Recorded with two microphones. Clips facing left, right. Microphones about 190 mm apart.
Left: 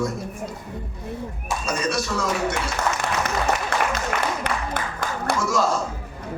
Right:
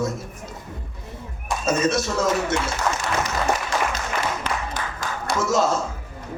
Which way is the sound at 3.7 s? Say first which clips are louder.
Left 1 dB; 60° left (ahead or behind).